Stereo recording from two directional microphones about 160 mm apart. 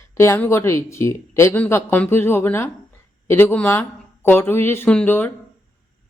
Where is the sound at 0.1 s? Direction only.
15° left (ahead or behind).